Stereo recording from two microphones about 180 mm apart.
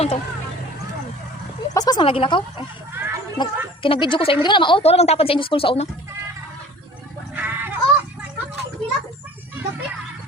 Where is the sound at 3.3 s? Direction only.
25° left (ahead or behind).